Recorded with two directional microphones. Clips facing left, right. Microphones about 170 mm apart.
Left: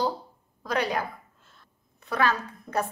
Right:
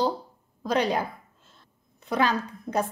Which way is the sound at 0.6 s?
20° right (ahead or behind).